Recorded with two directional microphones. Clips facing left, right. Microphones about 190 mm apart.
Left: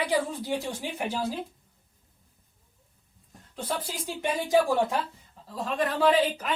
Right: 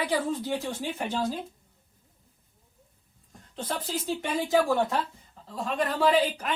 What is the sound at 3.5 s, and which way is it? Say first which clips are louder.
Speech: right 1 dB; 10° left (ahead or behind).